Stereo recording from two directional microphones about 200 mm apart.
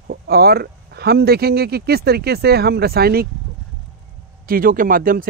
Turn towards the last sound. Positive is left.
turn(degrees=-45)  # may be behind; listen again after turning